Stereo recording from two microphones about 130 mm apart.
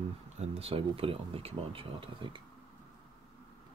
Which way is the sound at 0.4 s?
50° right (ahead or behind).